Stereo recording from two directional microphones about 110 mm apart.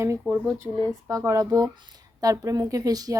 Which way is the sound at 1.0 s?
30° right (ahead or behind).